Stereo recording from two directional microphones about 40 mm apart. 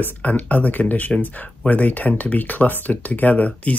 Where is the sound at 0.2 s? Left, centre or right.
Left.